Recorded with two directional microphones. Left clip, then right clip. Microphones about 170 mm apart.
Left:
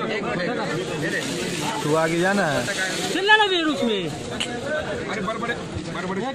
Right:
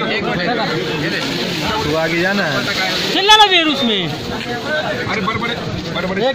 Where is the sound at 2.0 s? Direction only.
40° left (ahead or behind).